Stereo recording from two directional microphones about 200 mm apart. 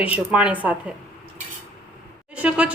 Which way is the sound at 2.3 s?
5° right (ahead or behind).